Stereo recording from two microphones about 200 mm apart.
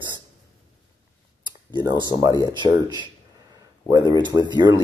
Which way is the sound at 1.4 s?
20° right (ahead or behind).